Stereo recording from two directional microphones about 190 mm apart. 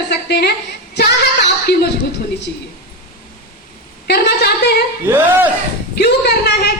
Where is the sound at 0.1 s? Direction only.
60° left (ahead or behind).